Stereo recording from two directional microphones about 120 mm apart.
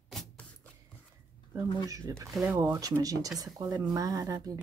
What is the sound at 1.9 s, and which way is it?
Speech, 30° right (ahead or behind).